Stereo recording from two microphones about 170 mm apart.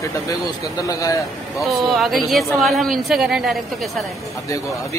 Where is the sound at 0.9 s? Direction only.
20° left (ahead or behind).